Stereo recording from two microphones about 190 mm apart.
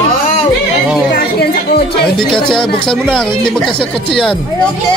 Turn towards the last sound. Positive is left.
turn(degrees=5)  # may be behind; listen again after turning